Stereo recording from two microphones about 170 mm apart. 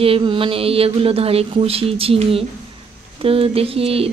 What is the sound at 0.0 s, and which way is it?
A woman's voice, 30° right (ahead or behind).